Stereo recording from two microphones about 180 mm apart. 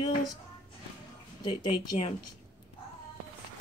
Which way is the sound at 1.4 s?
30° left (ahead or behind).